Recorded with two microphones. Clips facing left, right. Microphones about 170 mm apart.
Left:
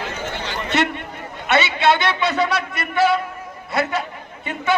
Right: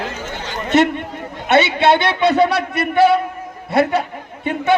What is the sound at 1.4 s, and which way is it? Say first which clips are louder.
A man's voice: right 4 dB; 55° right (ahead or behind).